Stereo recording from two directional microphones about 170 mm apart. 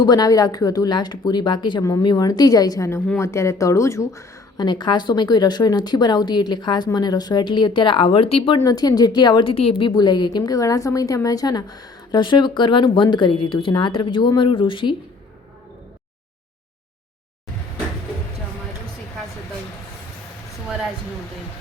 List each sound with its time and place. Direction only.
0.0 s a woman's voice: 25° left (ahead or behind)
8.6 s a woman's voice: 20° left (ahead or behind)